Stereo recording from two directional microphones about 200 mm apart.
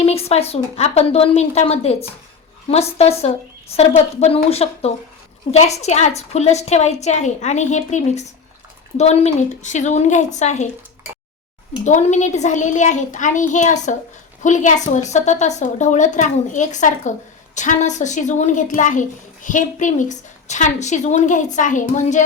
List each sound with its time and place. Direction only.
0.0 s a woman's voice: 30° left (ahead or behind)
11.9 s a woman's voice: 35° left (ahead or behind)